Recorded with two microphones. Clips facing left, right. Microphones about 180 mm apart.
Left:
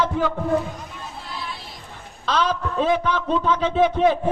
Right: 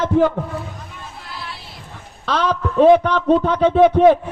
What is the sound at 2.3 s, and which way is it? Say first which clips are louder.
A man's voice: right 2 dB; 60° right (ahead or behind).